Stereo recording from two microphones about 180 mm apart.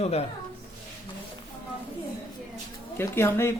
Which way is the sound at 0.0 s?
35° left (ahead or behind).